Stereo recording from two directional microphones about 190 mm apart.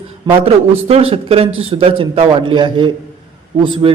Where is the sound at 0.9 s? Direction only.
30° right (ahead or behind).